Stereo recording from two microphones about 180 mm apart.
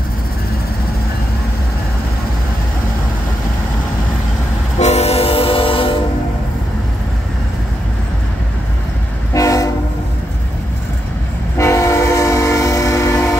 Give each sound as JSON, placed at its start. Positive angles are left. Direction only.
{"t": 4.7, "sound": "train", "side_deg": 35}
{"t": 9.3, "sound": "train", "side_deg": 20}
{"t": 11.5, "sound": "train", "side_deg": 15}